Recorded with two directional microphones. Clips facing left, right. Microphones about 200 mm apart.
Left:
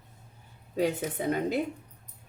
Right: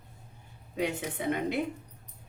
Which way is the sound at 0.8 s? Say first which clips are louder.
Left 4 dB; 40° left (ahead or behind).